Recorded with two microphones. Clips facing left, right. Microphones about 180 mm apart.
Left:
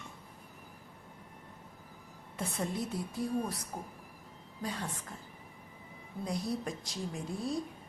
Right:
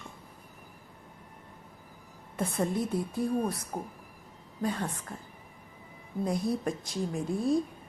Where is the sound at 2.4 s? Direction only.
55° right (ahead or behind).